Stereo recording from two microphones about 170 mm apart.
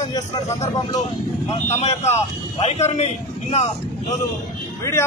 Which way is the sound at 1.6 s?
40° left (ahead or behind).